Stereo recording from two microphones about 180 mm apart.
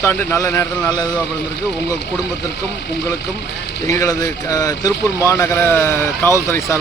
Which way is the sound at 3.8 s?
15° left (ahead or behind).